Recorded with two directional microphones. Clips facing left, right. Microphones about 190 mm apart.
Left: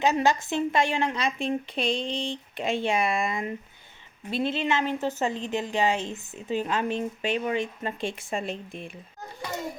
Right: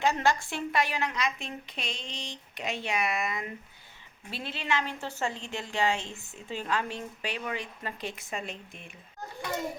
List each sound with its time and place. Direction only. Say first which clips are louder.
0.0 s a woman's voice: left 4 dB; 20° left (ahead or behind)